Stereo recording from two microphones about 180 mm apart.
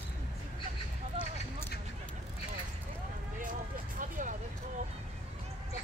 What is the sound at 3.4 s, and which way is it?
Vehicle, 50° right (ahead or behind).